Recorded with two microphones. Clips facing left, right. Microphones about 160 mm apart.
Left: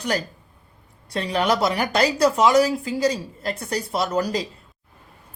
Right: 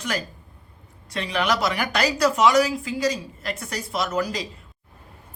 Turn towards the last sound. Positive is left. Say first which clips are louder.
# left 3 dB
turn(degrees=35)  # may be behind; listen again after turning